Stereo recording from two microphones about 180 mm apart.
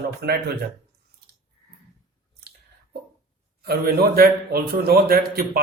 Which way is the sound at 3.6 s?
60° right (ahead or behind).